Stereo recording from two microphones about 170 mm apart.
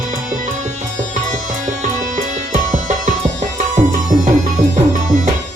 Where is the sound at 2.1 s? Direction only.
50° right (ahead or behind).